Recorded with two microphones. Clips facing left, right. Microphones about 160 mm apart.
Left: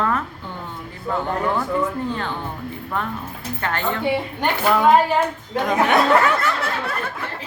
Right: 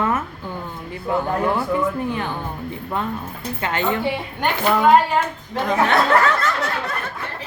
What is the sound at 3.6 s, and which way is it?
Speech, 15° right (ahead or behind).